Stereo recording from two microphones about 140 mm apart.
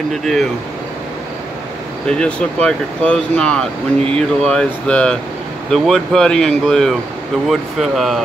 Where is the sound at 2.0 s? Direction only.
5° left (ahead or behind).